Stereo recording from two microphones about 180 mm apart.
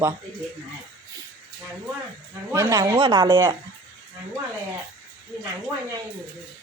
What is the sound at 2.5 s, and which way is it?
Speech, 20° right (ahead or behind).